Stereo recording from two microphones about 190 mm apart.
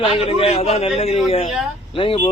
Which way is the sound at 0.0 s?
30° left (ahead or behind).